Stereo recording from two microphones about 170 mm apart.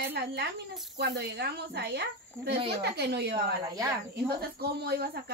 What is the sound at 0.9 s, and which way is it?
A woman's voice, 80° right.